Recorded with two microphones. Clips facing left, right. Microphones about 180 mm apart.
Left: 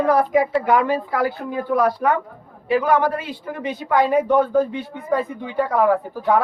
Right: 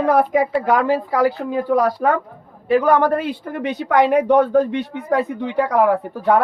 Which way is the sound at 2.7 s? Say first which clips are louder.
Right 3 dB; 55° right (ahead or behind).